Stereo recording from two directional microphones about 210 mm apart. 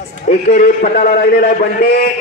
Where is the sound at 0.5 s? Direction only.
40° left (ahead or behind).